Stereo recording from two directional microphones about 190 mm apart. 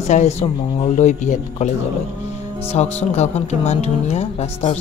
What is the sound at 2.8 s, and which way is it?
Speech, 35° left (ahead or behind).